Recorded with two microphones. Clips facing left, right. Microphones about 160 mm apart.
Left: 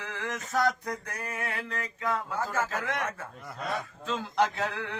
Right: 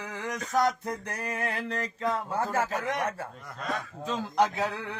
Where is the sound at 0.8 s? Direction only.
30° right (ahead or behind).